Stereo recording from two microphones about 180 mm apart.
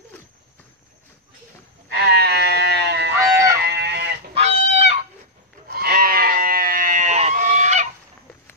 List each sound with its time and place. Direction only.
1.9 s sheep: 60° right (ahead or behind)
3.6 s goat: 70° right (ahead or behind)
4.3 s goose: 35° right (ahead or behind)
5.7 s goat: 55° right (ahead or behind); by 7.9 s 40° right (ahead or behind)